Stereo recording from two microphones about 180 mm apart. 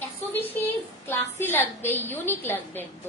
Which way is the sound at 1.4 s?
10° left (ahead or behind).